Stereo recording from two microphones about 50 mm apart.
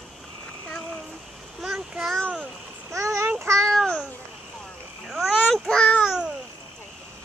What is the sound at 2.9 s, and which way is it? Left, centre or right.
Child singing, right.